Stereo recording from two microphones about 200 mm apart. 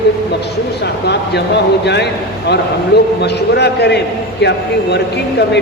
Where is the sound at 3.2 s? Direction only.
55° left (ahead or behind).